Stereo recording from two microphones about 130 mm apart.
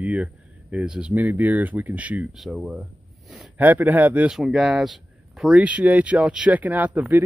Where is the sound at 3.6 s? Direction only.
15° right (ahead or behind).